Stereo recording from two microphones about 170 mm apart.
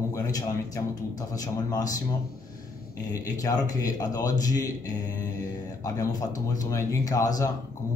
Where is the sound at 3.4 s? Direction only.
20° left (ahead or behind).